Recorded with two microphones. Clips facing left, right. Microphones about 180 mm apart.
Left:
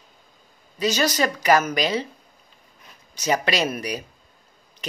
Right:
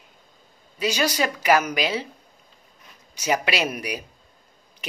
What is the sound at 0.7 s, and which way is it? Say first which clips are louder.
Speech: left 2 dB; 10° right (ahead or behind).